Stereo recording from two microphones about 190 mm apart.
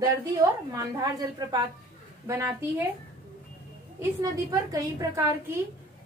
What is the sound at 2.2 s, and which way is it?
Speech, 15° right (ahead or behind).